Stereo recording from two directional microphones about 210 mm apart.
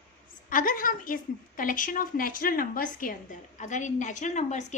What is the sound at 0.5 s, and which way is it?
A woman's voice, 40° left (ahead or behind).